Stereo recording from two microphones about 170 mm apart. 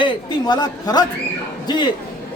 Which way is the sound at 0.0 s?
25° left (ahead or behind).